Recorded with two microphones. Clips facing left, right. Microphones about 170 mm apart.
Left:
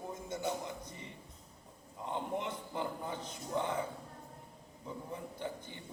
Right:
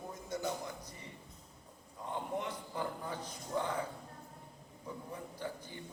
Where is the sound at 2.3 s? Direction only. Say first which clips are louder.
Left 1 dB; 20° left (ahead or behind).